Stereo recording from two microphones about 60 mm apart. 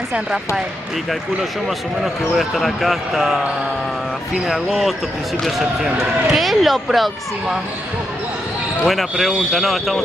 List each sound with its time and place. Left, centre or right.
2.3 s speech: centre
4.5 s speech: centre
8.8 s speech: centre